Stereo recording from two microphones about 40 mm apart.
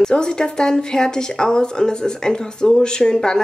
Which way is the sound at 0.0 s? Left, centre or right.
Left.